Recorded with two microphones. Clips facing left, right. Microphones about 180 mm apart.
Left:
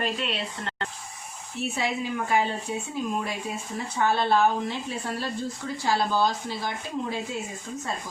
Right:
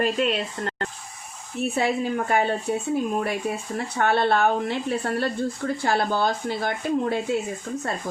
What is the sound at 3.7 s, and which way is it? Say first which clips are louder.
Speech: right 2 dB; 65° right (ahead or behind).